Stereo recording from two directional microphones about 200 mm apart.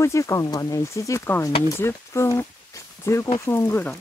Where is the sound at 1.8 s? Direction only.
15° left (ahead or behind).